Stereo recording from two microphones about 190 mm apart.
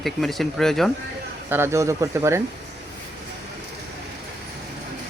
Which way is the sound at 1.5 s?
10° right (ahead or behind).